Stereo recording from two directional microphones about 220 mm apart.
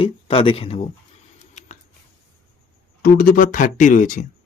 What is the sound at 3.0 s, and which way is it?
Speech, 40° left (ahead or behind).